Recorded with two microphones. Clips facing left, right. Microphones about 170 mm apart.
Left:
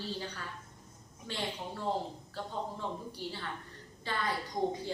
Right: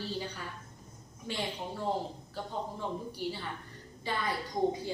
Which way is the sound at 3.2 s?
10° right (ahead or behind).